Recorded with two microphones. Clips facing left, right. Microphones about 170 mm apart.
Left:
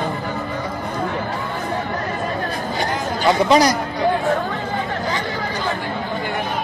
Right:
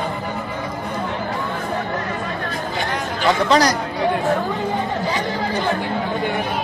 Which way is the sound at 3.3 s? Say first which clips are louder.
Left 2 dB; 10° left (ahead or behind).